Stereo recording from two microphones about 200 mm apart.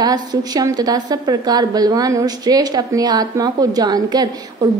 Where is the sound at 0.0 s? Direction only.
20° right (ahead or behind).